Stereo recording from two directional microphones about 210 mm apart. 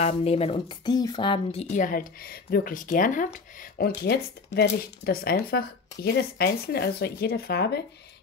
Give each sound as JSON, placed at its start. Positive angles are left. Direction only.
{"t": 0.0, "sound": "speech", "side_deg": 30}